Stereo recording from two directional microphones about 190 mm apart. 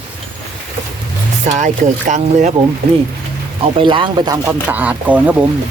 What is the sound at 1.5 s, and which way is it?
Speech, 40° right (ahead or behind).